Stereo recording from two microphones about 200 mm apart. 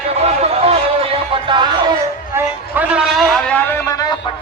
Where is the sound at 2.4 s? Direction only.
10° right (ahead or behind); by 4.2 s 15° left (ahead or behind).